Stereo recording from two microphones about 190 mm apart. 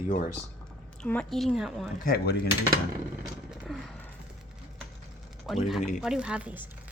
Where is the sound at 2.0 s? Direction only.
55° left (ahead or behind).